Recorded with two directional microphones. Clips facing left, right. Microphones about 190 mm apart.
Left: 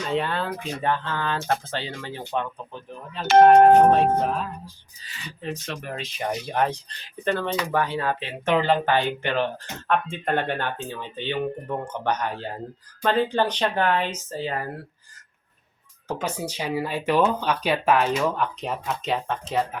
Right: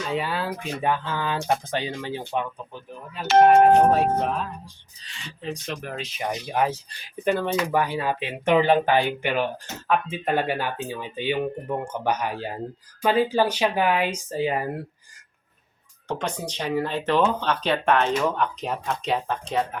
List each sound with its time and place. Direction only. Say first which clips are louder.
0.1 s speech: left 2 dB; 5° right (ahead or behind)
3.9 s speech: left 1 dB; centre (ahead or behind); by 14.7 s 15° right (ahead or behind)
16.0 s speech: even; 5° left (ahead or behind)